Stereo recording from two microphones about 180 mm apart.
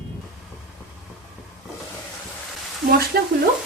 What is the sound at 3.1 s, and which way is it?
Stir, 55° right (ahead or behind).